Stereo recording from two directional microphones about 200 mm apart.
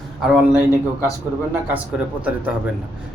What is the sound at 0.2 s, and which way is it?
Speech, 5° right (ahead or behind).